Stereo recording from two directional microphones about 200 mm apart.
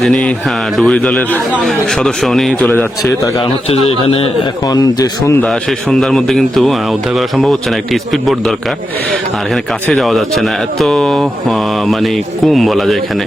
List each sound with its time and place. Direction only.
0.0 s speech: 5° left (ahead or behind)
3.3 s a man's voice: 25° left (ahead or behind)
5.4 s speech: centre (ahead or behind)
9.9 s speech: centre (ahead or behind)